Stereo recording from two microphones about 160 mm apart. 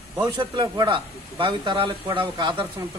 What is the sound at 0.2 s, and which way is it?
A man's voice, 25° right (ahead or behind).